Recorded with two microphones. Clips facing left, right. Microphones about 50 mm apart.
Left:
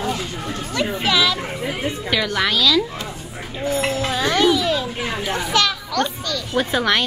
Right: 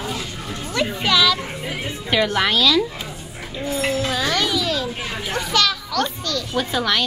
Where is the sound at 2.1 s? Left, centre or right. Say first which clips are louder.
Right 2 dB; centre.